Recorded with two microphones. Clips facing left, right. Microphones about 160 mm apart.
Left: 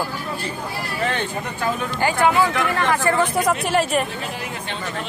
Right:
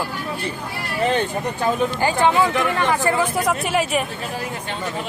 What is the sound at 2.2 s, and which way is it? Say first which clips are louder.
Speech: right 1 dB; 20° right (ahead or behind).